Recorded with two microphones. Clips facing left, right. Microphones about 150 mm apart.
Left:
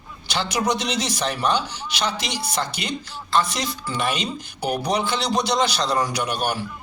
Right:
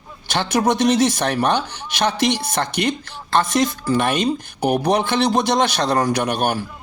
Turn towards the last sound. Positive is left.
turn(degrees=-55)  # may be behind; listen again after turning